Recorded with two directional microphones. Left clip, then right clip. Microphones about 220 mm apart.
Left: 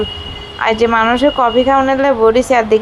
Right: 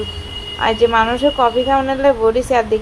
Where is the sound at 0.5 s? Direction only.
20° left (ahead or behind).